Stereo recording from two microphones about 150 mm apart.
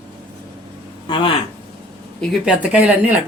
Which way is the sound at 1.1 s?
35° left (ahead or behind).